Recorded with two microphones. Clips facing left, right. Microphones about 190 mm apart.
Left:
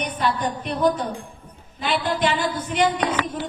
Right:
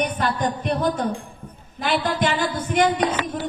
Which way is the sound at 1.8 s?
50° right (ahead or behind).